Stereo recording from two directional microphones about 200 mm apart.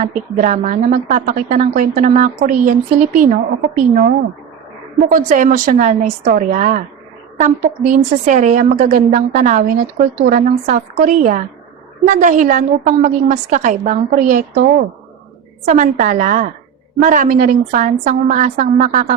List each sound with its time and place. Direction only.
0.0 s a woman's voice: 40° right (ahead or behind)